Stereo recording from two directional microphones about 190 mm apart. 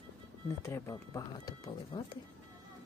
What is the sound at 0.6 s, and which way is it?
Speech, 15° left (ahead or behind).